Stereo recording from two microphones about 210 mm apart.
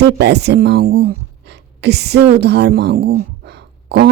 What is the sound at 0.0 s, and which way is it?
A woman's voice, 55° right (ahead or behind).